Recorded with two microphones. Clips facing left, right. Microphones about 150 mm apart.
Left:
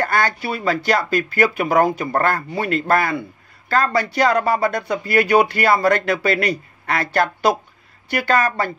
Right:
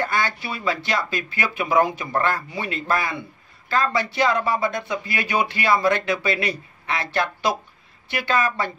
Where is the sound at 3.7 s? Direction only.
40° left (ahead or behind).